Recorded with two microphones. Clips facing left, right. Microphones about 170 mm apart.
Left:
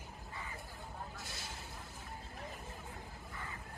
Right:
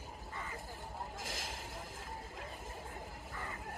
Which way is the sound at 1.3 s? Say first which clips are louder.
Right 4 dB; 90° right.